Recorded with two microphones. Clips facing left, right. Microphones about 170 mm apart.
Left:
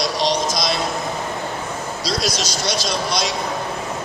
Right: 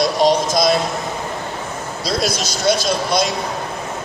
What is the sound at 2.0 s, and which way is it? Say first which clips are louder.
Speech: right 3 dB; 50° right (ahead or behind).